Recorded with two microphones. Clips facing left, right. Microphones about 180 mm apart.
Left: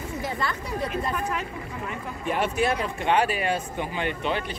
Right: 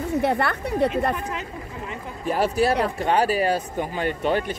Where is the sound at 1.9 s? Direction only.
35° right (ahead or behind).